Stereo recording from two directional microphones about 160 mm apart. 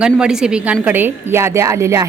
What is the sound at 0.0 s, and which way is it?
A woman's voice, 5° right (ahead or behind).